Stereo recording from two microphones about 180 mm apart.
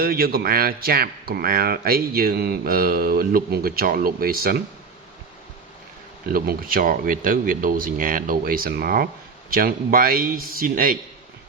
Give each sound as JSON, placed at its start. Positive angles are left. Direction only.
{"t": 0.0, "sound": "speech", "side_deg": -55}
{"t": 6.3, "sound": "speech", "side_deg": -55}